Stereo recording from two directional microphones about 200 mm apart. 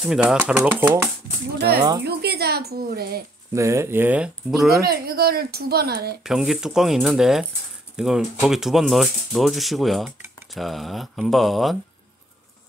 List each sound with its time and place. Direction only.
0.0 s speech: 5° right (ahead or behind)
2.0 s speech: 55° right (ahead or behind)
3.5 s speech: 15° right (ahead or behind)
4.8 s speech: 50° right (ahead or behind)
6.2 s speech: centre (ahead or behind)